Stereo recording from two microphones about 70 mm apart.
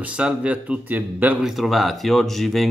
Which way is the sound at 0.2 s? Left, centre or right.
Centre.